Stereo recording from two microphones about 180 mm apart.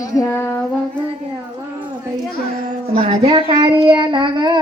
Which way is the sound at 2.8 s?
35° right (ahead or behind).